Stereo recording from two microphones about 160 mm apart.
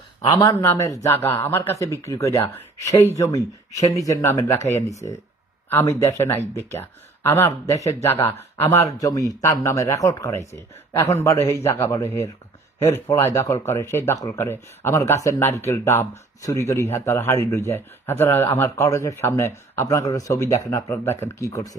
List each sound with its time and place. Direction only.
0.3 s speech: 20° left (ahead or behind)